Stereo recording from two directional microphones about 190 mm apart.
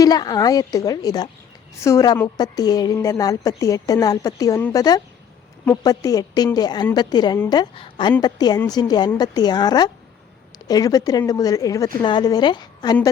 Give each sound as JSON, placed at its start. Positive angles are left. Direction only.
{"t": 0.0, "sound": "a woman's voice", "side_deg": 20}